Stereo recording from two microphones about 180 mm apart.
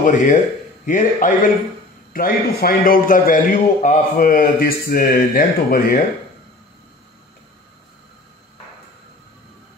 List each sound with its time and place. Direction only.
0.0 s a man's voice: 45° left (ahead or behind)